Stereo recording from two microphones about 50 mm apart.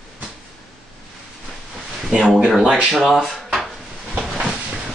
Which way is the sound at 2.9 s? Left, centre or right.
Centre.